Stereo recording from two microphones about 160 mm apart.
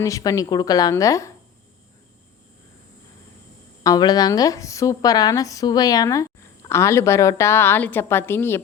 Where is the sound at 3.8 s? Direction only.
25° left (ahead or behind).